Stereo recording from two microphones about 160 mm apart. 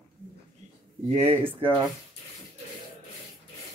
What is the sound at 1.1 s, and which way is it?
Speech, 40° right (ahead or behind).